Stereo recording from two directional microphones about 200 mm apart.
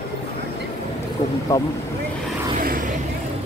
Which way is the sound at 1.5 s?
15° left (ahead or behind).